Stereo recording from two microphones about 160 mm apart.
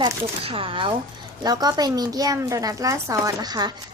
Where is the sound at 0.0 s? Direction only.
35° right (ahead or behind).